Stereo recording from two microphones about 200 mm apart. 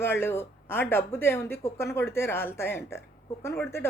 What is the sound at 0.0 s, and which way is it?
A woman's voice, 10° left (ahead or behind).